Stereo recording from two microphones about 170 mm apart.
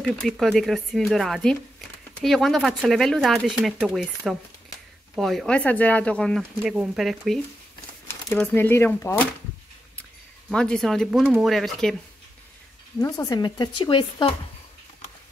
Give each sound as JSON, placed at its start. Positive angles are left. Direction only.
{"t": 0.0, "sound": "speech", "side_deg": 0}
{"t": 6.6, "sound": "speech", "side_deg": -5}
{"t": 8.1, "sound": "speech", "side_deg": 15}
{"t": 10.5, "sound": "speech", "side_deg": 5}
{"t": 13.0, "sound": "speech", "side_deg": 20}